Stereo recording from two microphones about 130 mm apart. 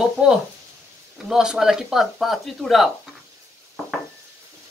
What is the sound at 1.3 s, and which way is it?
Speech, 5° right (ahead or behind).